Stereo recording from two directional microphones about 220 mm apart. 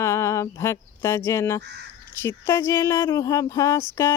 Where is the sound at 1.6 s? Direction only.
50° right (ahead or behind).